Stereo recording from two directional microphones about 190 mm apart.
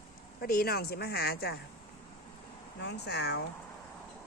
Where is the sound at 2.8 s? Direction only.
60° left (ahead or behind).